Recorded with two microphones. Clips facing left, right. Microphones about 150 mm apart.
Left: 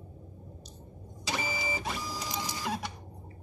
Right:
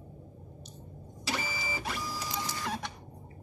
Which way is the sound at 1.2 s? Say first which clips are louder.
Left 2 dB; 20° left (ahead or behind).